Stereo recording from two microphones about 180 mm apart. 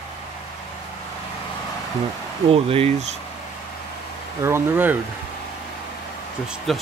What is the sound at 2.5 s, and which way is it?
Speech, 35° right (ahead or behind).